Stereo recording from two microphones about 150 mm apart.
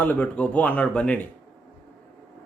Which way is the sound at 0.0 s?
10° left (ahead or behind).